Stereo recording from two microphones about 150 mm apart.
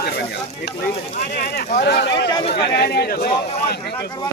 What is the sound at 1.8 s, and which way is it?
Speech, 90° left.